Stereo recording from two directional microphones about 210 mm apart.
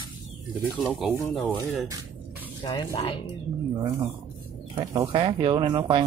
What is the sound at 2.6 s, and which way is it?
Speech, 20° left (ahead or behind).